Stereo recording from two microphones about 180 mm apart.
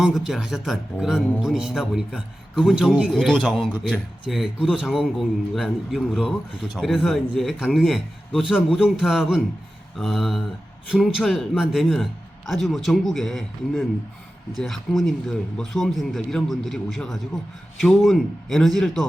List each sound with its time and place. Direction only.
0.0 s a man's voice: centre (ahead or behind)